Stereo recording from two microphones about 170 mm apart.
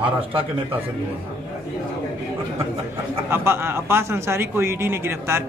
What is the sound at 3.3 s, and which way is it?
Speech, 15° right (ahead or behind).